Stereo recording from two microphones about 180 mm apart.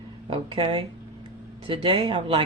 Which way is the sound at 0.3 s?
30° right (ahead or behind).